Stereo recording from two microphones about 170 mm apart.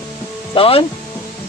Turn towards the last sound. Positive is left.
turn(degrees=35)  # may be behind; listen again after turning